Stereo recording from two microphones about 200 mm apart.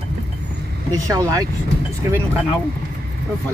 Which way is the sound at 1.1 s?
20° right (ahead or behind).